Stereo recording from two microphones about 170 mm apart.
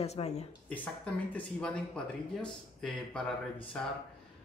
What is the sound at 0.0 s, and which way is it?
Speech, 40° left (ahead or behind).